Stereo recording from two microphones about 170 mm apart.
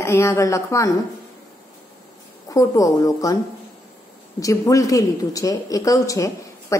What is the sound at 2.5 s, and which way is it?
Speech, 20° left (ahead or behind).